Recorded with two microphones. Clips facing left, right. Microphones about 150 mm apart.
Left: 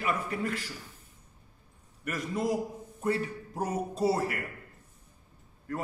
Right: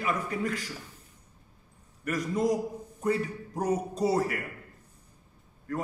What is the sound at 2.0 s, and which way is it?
A man's voice, centre (ahead or behind).